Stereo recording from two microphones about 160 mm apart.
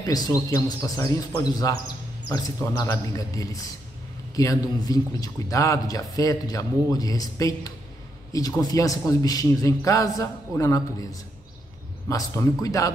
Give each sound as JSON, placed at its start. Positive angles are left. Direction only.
{"t": 0.0, "sound": "a man's voice", "side_deg": 25}